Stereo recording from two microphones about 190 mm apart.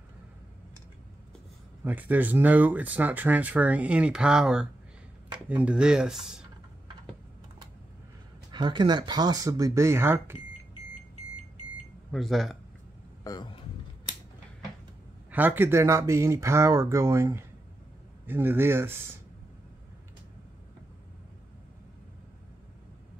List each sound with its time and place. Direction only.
1.9 s speech: 10° right (ahead or behind)
8.5 s speech: 25° right (ahead or behind)
12.1 s speech: centre (ahead or behind)
13.2 s vehicle: 20° left (ahead or behind)
15.3 s speech: 10° right (ahead or behind)